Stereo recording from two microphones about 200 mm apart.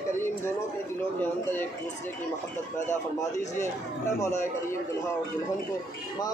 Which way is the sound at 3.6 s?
15° left (ahead or behind).